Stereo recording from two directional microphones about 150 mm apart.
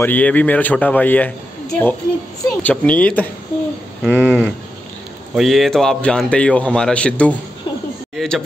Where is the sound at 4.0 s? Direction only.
5° right (ahead or behind).